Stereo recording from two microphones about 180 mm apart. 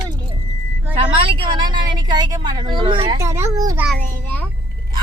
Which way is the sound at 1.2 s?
30° right (ahead or behind).